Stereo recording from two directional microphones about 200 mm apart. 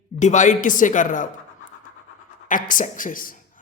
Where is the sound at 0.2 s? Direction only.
35° left (ahead or behind).